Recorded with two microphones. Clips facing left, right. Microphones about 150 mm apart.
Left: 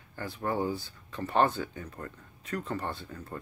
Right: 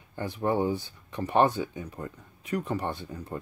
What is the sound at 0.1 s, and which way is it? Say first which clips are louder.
Speech: right 5 dB; 20° right (ahead or behind).